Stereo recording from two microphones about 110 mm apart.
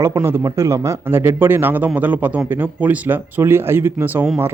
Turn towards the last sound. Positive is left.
turn(degrees=-20)  # may be behind; listen again after turning